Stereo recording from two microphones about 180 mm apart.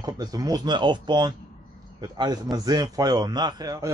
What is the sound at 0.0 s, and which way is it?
A man's voice, 20° right (ahead or behind).